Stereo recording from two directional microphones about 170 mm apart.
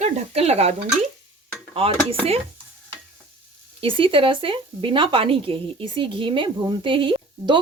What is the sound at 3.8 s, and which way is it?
Speech, 30° right (ahead or behind).